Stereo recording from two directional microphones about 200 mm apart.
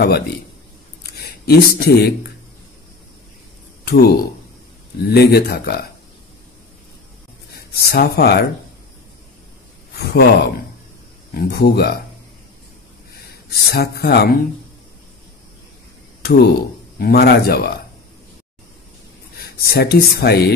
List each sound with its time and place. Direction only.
1.1 s speech: 50° left (ahead or behind)
3.8 s speech: 50° left (ahead or behind)
7.5 s speech: 50° left (ahead or behind)
9.9 s speech: 55° left (ahead or behind)
13.3 s speech: 55° left (ahead or behind)
16.2 s speech: 55° left (ahead or behind)
19.3 s speech: 50° left (ahead or behind)